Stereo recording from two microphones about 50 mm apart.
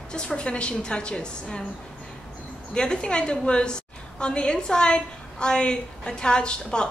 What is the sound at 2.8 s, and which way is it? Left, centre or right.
A woman's voice, centre.